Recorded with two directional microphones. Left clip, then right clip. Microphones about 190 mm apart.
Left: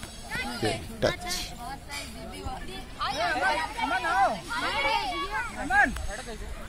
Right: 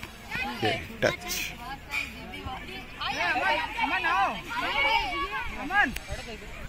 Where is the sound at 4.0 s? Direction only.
15° left (ahead or behind).